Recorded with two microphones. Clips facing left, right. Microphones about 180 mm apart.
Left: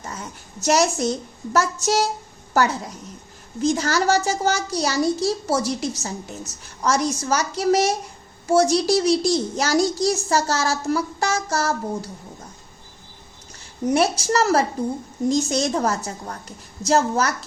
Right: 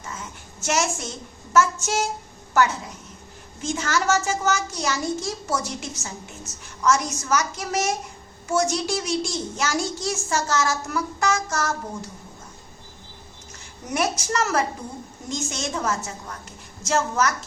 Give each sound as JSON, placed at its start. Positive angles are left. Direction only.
{"t": 0.0, "sound": "a sound", "side_deg": 35}
{"t": 1.5, "sound": "a woman's voice", "side_deg": 35}
{"t": 13.9, "sound": "a woman's voice", "side_deg": 30}